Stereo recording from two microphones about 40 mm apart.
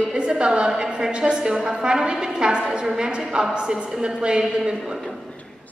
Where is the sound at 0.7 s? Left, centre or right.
Right.